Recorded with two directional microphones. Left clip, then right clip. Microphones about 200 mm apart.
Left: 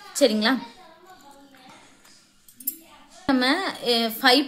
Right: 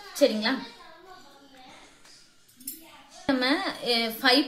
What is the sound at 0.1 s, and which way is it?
Speech, 40° left (ahead or behind).